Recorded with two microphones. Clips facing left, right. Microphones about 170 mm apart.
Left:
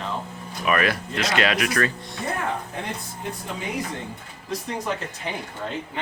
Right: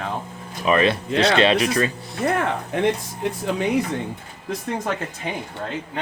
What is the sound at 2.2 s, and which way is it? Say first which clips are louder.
Speech: right 6 dB; 90° right.